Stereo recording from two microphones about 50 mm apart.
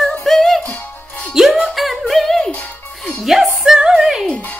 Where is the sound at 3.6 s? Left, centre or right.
Centre.